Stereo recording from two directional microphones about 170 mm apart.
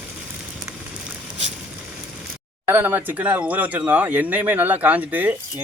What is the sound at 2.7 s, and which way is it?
Speech, 10° right (ahead or behind).